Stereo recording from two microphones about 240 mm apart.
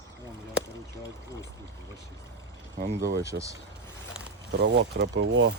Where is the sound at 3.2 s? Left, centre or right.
Centre.